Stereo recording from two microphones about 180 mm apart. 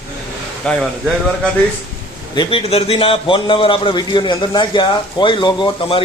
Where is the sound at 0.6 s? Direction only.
5° left (ahead or behind).